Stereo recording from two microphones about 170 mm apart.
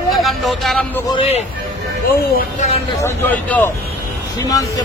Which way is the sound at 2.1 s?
65° left (ahead or behind).